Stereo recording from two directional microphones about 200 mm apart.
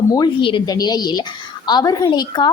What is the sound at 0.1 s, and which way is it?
A woman's voice, 20° left (ahead or behind).